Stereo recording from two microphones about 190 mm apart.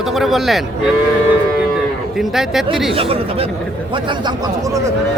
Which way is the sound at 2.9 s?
30° right (ahead or behind).